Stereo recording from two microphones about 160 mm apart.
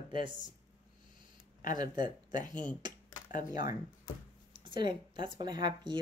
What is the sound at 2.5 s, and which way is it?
Speech, 10° left (ahead or behind).